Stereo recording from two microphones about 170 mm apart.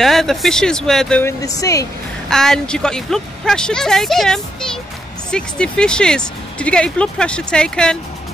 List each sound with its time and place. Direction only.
0.0 s speech: centre (ahead or behind)
1.4 s speech: 20° left (ahead or behind)
2.2 s speech: 5° left (ahead or behind)